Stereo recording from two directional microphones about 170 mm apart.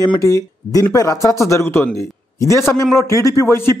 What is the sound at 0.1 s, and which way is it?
Speech, 20° left (ahead or behind).